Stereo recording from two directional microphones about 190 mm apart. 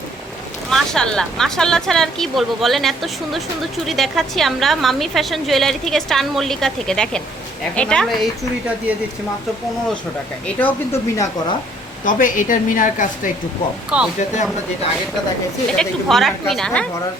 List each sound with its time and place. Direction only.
0.7 s a woman's voice: 5° left (ahead or behind)
10.4 s speech: 10° left (ahead or behind)
12.0 s a woman's voice: 45° left (ahead or behind)
13.9 s a woman's voice: 5° right (ahead or behind)
15.7 s a woman's voice: centre (ahead or behind)